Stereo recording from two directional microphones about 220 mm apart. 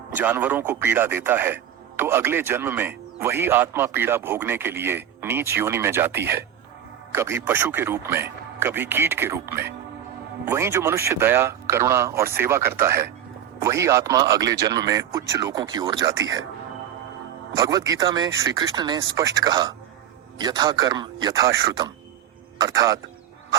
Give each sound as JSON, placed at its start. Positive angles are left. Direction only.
{"t": 0.1, "sound": "a man's voice", "side_deg": -10}
{"t": 17.5, "sound": "a man's voice", "side_deg": -15}